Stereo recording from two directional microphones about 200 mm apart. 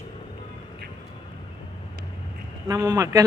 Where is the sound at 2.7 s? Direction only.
15° right (ahead or behind).